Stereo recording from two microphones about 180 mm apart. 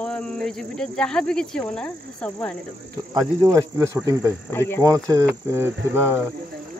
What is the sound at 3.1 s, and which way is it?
Speech, 20° right (ahead or behind).